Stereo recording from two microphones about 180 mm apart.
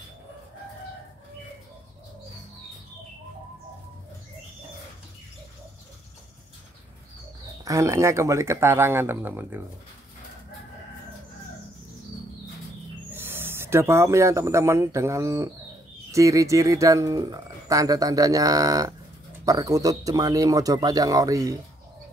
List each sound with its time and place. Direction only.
7.6 s speech: 15° right (ahead or behind)
13.1 s speech: 10° right (ahead or behind)